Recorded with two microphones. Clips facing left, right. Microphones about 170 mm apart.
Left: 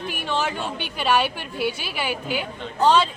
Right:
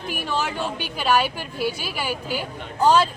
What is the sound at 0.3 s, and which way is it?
A woman's voice, 5° right (ahead or behind).